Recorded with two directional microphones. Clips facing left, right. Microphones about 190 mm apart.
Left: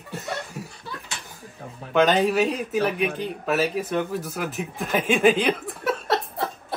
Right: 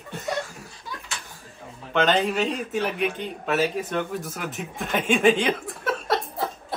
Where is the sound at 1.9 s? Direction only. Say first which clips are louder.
Left 3 dB; 10° left (ahead or behind).